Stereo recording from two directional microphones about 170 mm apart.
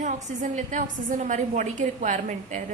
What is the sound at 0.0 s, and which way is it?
A woman's voice, 45° right (ahead or behind).